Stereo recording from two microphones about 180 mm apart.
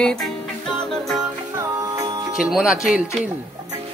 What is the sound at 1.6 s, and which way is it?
Music, 20° right (ahead or behind).